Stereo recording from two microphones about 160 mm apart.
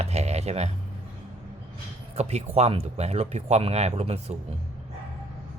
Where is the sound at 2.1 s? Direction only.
40° right (ahead or behind).